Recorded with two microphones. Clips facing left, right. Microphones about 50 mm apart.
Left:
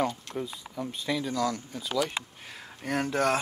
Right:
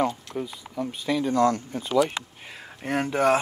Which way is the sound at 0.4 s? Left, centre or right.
Centre.